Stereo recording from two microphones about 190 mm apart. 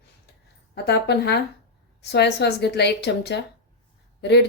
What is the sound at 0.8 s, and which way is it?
Speech, 60° left (ahead or behind).